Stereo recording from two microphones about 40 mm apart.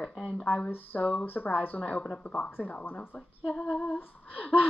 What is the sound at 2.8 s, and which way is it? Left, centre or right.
Speech, left.